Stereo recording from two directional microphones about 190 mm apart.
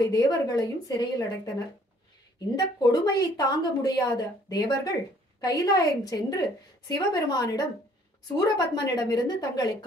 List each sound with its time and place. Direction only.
0.0 s a woman's voice: 20° left (ahead or behind)